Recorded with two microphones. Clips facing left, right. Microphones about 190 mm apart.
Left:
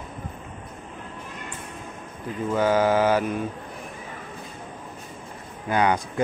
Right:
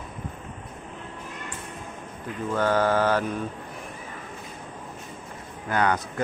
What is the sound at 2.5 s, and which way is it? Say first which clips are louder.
Speech: left 2 dB; 10° left (ahead or behind).